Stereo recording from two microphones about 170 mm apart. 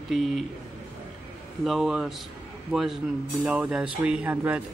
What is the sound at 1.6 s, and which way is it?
Speech, centre (ahead or behind).